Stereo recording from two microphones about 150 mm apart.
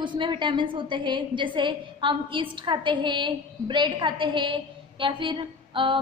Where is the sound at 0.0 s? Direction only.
30° right (ahead or behind).